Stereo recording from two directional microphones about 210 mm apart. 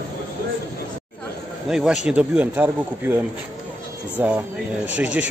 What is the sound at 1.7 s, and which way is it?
A man's voice, centre (ahead or behind).